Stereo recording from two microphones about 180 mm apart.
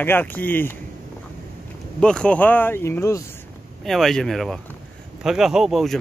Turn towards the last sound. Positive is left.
turn(degrees=0)  # may be behind; listen again after turning